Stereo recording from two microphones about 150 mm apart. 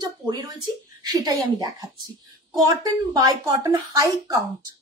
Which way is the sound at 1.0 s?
25° right (ahead or behind).